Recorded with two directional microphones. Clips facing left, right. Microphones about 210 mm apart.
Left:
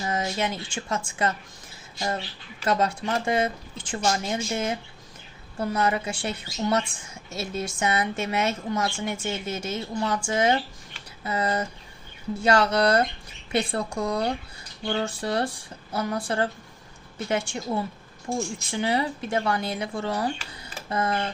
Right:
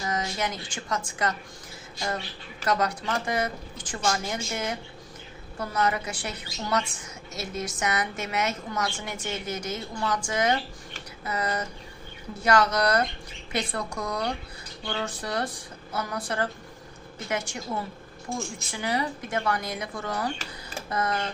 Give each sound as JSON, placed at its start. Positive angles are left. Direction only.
{"t": 0.0, "sound": "a woman's voice", "side_deg": 25}
{"t": 2.6, "sound": "a woman's voice", "side_deg": 25}
{"t": 18.7, "sound": "a woman's voice", "side_deg": 25}